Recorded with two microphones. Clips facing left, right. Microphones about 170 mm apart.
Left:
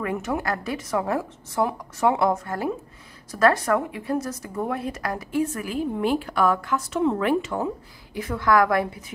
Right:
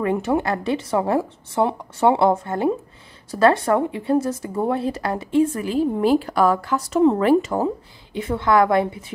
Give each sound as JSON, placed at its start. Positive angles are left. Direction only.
{"t": 0.0, "sound": "a woman's voice", "side_deg": -30}